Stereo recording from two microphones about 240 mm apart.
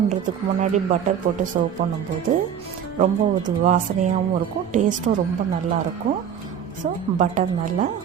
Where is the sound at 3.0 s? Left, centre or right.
Right.